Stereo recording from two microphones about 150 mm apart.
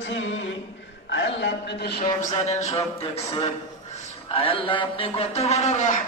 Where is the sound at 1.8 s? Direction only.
90° left.